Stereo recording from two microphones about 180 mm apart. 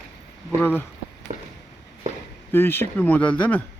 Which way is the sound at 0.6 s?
10° left (ahead or behind).